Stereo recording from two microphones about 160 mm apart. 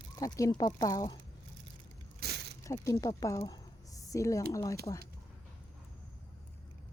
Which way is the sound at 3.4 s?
25° left (ahead or behind).